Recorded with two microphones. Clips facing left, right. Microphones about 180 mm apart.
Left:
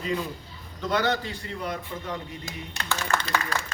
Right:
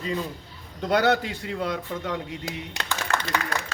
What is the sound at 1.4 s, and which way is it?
Speech, 90° right.